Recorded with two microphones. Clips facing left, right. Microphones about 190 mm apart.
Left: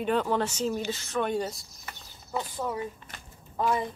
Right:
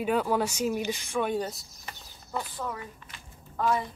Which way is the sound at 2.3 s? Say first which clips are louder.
Left 3 dB; 20° left (ahead or behind).